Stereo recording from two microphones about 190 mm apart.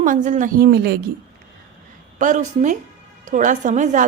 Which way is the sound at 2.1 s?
40° right (ahead or behind).